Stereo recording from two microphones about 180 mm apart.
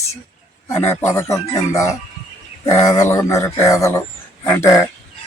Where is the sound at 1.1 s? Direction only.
15° left (ahead or behind).